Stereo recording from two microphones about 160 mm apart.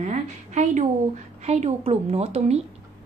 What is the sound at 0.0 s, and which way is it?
A woman's voice, 50° right (ahead or behind).